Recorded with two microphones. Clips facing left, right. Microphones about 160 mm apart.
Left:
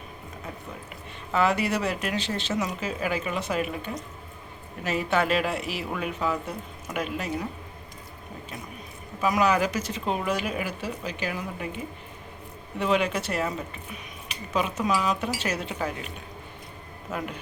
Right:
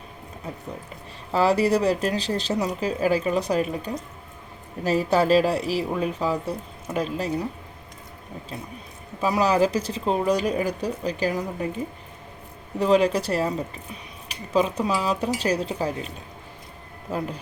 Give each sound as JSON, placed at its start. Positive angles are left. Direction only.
{"t": 1.3, "sound": "speech", "side_deg": -35}
{"t": 9.2, "sound": "speech", "side_deg": -30}
{"t": 12.8, "sound": "speech", "side_deg": -35}
{"t": 14.5, "sound": "speech", "side_deg": -35}
{"t": 17.1, "sound": "speech", "side_deg": -35}